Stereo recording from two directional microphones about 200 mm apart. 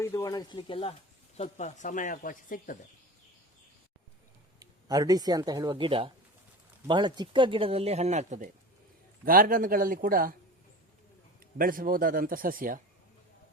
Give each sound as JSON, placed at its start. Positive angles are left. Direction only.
{"t": 0.0, "sound": "speech", "side_deg": 15}
{"t": 4.6, "sound": "a man's voice", "side_deg": -20}
{"t": 11.5, "sound": "a man's voice", "side_deg": -45}